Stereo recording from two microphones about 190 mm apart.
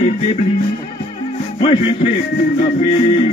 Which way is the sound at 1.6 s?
30° left (ahead or behind).